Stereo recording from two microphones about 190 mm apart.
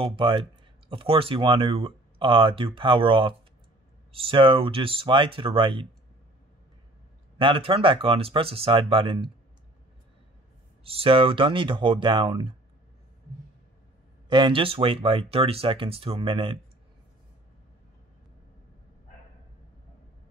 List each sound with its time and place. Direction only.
0.0 s speech: 25° right (ahead or behind)
7.3 s speech: 25° right (ahead or behind)
10.8 s speech: 30° right (ahead or behind)
14.3 s speech: 25° right (ahead or behind)